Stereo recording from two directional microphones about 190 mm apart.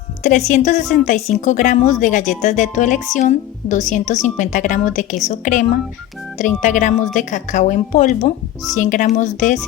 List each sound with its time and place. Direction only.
0.2 s a woman's voice: 40° left (ahead or behind)